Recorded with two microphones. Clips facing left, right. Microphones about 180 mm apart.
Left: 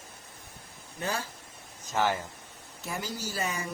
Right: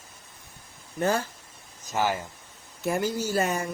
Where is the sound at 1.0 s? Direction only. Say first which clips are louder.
Right 8 dB; 50° right (ahead or behind).